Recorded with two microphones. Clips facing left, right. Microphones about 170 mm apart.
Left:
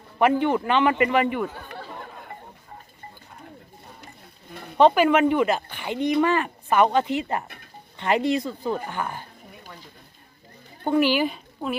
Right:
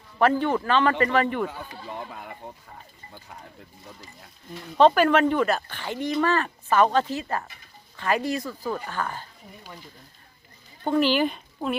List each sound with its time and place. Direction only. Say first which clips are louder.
0.2 s speech: left 1 dB; 15° left (ahead or behind)
4.8 s speech: left 1 dB; 10° left (ahead or behind)
7.4 s a sound: left 4 dB; 60° left (ahead or behind)
7.9 s speech: left 3 dB; 20° left (ahead or behind)
10.8 s a woman's voice: left 1 dB; 10° left (ahead or behind)